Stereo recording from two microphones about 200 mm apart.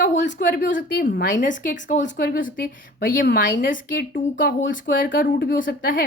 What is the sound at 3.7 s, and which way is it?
A woman's voice, 45° left (ahead or behind).